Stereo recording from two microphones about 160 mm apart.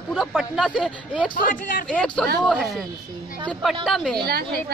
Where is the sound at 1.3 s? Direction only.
60° left (ahead or behind).